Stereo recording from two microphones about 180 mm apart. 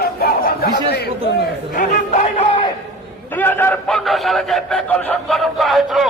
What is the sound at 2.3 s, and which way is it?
Music, 25° left (ahead or behind).